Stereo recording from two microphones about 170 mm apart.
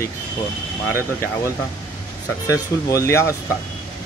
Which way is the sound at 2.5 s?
20° left (ahead or behind).